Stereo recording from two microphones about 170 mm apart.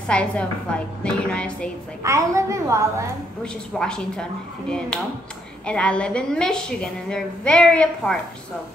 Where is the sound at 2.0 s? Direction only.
15° right (ahead or behind).